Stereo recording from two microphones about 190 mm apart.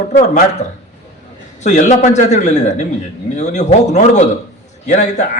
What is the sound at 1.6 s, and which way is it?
A man's voice, 40° left (ahead or behind).